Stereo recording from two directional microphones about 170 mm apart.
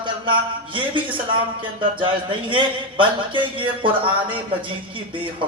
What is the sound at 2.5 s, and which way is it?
Speech, 30° right (ahead or behind).